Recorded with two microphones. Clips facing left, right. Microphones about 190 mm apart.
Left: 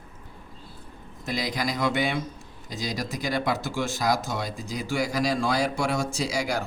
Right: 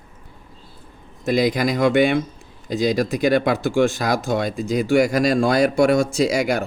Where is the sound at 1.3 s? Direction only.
55° right (ahead or behind).